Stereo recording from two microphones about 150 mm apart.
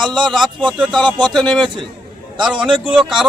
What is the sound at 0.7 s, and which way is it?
Speech, centre (ahead or behind).